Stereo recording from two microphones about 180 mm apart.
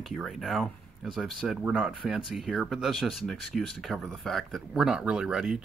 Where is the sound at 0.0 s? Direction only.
Centre (ahead or behind).